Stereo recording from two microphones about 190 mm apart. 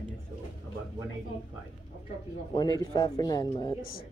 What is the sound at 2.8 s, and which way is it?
Speech, 20° left (ahead or behind).